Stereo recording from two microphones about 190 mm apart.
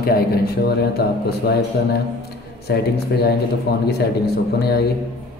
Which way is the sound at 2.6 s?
60° left (ahead or behind).